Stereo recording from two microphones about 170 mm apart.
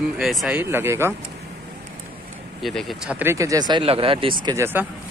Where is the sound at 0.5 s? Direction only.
15° right (ahead or behind).